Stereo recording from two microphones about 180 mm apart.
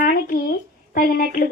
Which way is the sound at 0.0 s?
50° left (ahead or behind).